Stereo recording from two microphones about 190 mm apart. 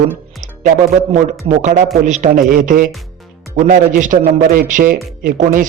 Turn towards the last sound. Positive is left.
turn(degrees=-45)  # may be behind; listen again after turning